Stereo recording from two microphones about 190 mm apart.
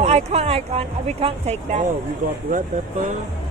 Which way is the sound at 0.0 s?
35° right (ahead or behind).